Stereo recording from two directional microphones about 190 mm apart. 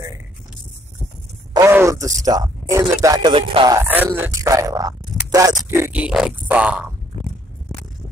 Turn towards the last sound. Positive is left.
turn(degrees=-5)  # may be behind; listen again after turning